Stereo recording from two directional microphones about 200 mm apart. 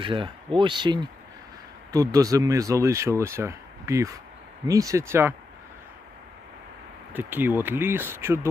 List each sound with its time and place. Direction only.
0.0 s speech: 25° right (ahead or behind)
7.1 s speech: 10° right (ahead or behind)